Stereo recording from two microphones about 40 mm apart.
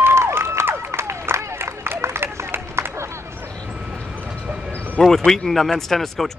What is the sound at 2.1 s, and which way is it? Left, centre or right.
Run, right.